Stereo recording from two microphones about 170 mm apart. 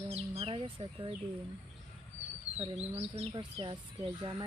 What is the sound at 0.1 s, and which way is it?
Bird, 35° right (ahead or behind).